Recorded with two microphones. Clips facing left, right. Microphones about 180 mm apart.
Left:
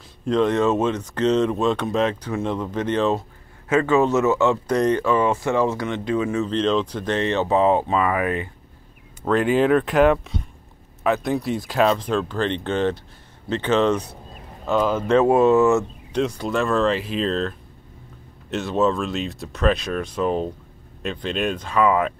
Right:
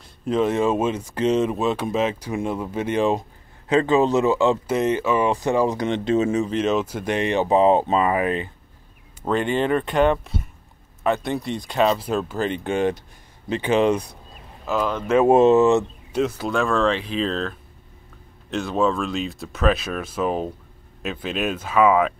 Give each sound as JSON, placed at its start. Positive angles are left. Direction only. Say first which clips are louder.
{"t": 0.2, "sound": "speech", "louder": "left 1 dB", "side_deg": -5}
{"t": 4.6, "sound": "speech", "louder": "left 1 dB", "side_deg": -5}
{"t": 6.4, "sound": "speech", "louder": "left 1 dB", "side_deg": -10}
{"t": 9.3, "sound": "speech", "louder": "left 3 dB", "side_deg": 0}
{"t": 14.7, "sound": "speech", "louder": "left 3 dB", "side_deg": 0}
{"t": 15.2, "sound": "speech", "louder": "right 3 dB", "side_deg": -20}
{"t": 16.1, "sound": "speech", "louder": "even", "side_deg": -5}